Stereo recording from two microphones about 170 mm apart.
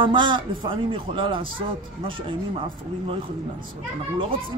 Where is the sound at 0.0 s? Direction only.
25° right (ahead or behind).